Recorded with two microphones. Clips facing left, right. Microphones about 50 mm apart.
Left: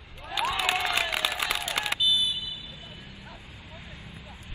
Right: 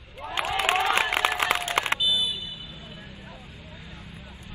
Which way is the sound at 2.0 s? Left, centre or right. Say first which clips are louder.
Even; centre.